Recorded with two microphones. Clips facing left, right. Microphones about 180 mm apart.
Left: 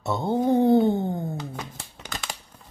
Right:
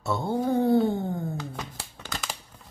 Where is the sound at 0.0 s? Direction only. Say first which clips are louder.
Left 3 dB; 20° left (ahead or behind).